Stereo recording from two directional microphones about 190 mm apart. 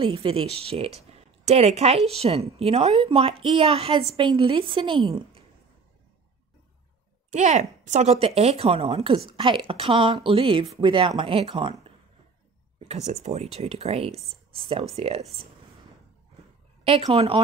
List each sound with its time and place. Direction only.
0.0 s speech: 25° right (ahead or behind)
7.2 s speech: 40° right (ahead or behind)
16.8 s speech: 30° right (ahead or behind)